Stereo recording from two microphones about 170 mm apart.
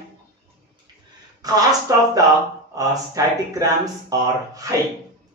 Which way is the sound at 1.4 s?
20° right (ahead or behind).